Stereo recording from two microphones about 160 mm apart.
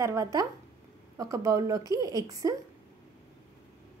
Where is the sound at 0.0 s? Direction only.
20° right (ahead or behind).